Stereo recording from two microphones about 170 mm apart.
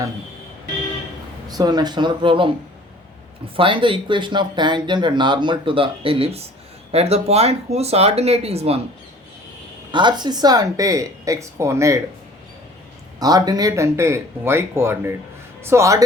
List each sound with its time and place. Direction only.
1.5 s speech: 25° right (ahead or behind)
3.5 s speech: 30° right (ahead or behind)
9.9 s speech: 25° right (ahead or behind)
13.1 s speech: 20° right (ahead or behind)